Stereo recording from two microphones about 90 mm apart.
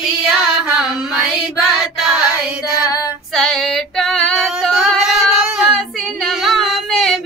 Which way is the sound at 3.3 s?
Centre (ahead or behind).